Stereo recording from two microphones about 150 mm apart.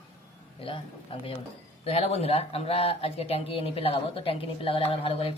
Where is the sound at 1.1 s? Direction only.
40° left (ahead or behind).